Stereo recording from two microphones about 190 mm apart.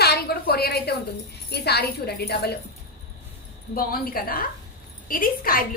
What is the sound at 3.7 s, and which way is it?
A woman's voice, 50° left (ahead or behind).